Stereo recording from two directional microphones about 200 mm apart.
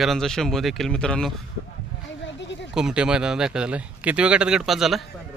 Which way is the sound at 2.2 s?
60° left (ahead or behind).